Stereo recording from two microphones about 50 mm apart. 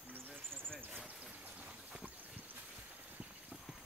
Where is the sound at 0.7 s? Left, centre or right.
Right.